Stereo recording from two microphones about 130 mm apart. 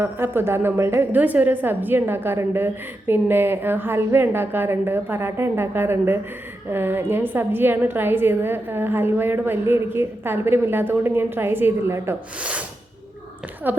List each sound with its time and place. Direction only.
0.0 s a woman's voice: 15° right (ahead or behind)
13.7 s a woman's voice: 15° right (ahead or behind)